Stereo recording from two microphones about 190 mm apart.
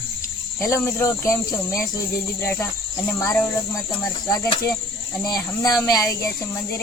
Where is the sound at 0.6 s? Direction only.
15° left (ahead or behind).